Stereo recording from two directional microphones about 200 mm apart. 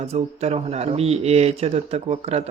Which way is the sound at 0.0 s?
30° right (ahead or behind).